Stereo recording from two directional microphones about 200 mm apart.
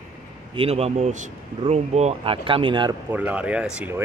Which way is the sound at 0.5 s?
30° right (ahead or behind).